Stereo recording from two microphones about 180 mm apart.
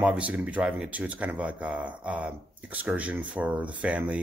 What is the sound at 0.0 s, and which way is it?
Speech, 5° right (ahead or behind).